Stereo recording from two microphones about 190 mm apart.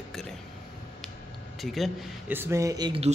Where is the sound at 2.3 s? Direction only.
15° right (ahead or behind).